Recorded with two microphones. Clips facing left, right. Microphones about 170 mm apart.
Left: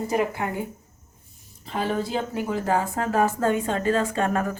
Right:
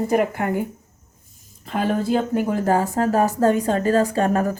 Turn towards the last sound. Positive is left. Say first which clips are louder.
# right 4 dB
turn(degrees=-35)  # may be behind; listen again after turning